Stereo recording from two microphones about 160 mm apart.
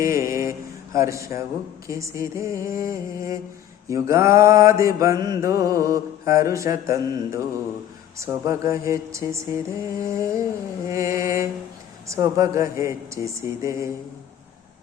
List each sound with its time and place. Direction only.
0.0 s mantra: 20° right (ahead or behind)